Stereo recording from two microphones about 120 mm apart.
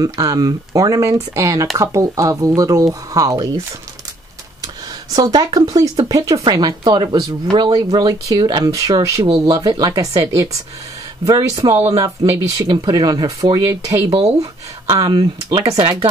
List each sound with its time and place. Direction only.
0.0 s speech: 30° right (ahead or behind)
5.1 s speech: 30° right (ahead or behind)